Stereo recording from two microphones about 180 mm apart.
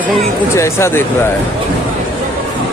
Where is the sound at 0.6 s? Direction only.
15° left (ahead or behind).